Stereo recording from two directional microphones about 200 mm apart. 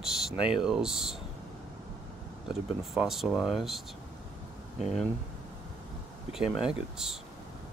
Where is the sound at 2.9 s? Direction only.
Centre (ahead or behind).